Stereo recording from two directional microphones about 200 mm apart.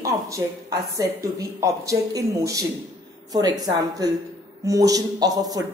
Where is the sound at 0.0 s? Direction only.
15° right (ahead or behind).